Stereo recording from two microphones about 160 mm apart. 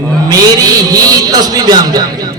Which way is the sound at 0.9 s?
25° right (ahead or behind).